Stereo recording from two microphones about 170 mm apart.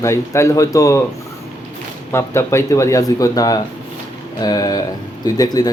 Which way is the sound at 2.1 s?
15° left (ahead or behind).